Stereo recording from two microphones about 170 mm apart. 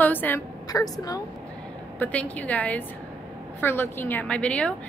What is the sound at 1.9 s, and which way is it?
A woman's voice, 10° left (ahead or behind).